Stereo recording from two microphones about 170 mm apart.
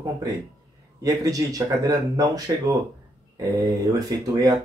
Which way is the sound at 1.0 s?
20° right (ahead or behind).